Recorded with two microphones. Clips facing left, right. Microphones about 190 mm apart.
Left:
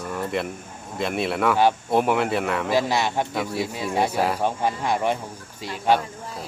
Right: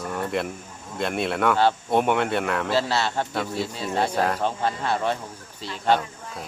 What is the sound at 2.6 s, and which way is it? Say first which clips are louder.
A man's voice: left 2 dB; 15° left (ahead or behind).